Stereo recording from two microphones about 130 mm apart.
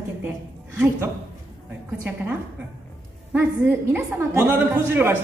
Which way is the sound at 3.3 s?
15° right (ahead or behind).